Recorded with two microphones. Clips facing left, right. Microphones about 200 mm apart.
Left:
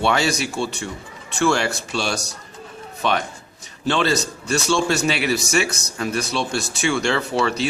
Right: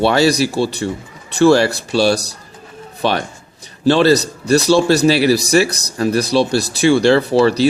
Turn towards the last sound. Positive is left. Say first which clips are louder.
# right 9 dB
turn(degrees=-35)  # may be behind; listen again after turning